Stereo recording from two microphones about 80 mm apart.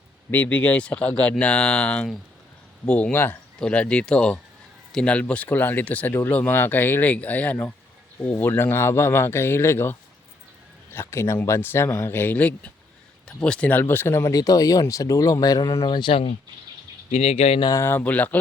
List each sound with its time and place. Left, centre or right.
0.3 s speech: left
17.8 s speech: left